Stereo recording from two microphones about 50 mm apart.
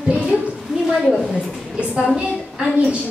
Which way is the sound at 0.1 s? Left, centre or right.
Right.